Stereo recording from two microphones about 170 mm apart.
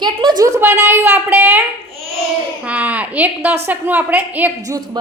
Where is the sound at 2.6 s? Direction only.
10° right (ahead or behind).